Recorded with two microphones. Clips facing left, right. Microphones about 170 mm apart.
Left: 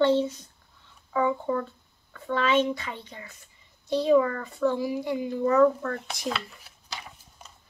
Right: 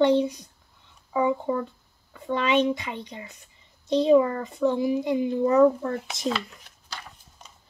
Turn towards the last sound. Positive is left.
turn(degrees=5)  # may be behind; listen again after turning